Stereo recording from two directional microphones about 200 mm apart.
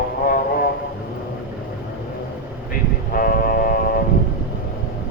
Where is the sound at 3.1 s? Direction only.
45° left (ahead or behind).